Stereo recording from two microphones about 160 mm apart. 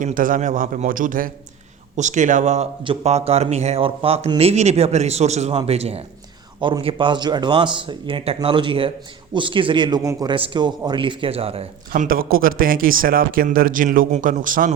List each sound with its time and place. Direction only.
0.0 s a man's voice: 55° right (ahead or behind); by 10.3 s 20° right (ahead or behind)
10.3 s speech: 30° right (ahead or behind)
11.9 s speech: 60° right (ahead or behind)